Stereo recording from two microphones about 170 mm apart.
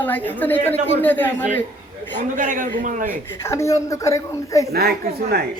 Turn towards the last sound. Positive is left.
turn(degrees=-65)  # may be behind; listen again after turning